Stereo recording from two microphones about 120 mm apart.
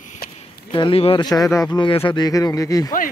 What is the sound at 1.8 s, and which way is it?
Speech, 45° left (ahead or behind).